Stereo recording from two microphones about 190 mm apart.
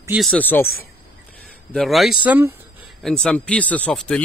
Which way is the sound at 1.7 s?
Centre (ahead or behind).